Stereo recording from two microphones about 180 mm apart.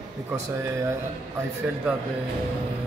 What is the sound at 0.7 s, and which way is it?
Speech, 15° right (ahead or behind).